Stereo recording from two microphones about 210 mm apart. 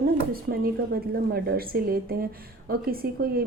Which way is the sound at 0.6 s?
45° right (ahead or behind).